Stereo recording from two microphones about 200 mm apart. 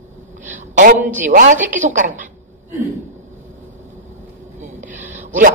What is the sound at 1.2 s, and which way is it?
Speech, 40° right (ahead or behind).